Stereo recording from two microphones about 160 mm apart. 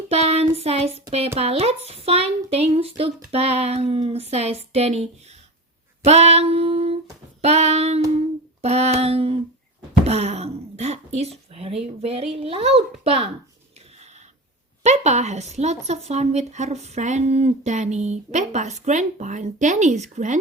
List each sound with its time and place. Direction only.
0.1 s a sound: 40° right (ahead or behind)
1.4 s speech: 40° right (ahead or behind)
14.8 s speech: 45° right (ahead or behind)